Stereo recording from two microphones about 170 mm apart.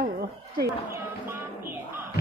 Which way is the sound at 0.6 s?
15° right (ahead or behind).